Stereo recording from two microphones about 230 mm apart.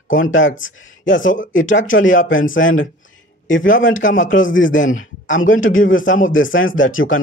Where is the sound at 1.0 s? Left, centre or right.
Left.